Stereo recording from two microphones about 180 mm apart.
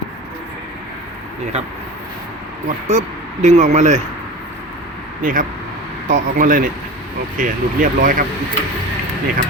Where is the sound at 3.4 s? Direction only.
40° right (ahead or behind).